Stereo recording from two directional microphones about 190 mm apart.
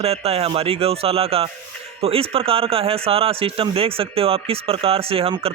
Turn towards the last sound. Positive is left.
turn(degrees=-30)  # may be behind; listen again after turning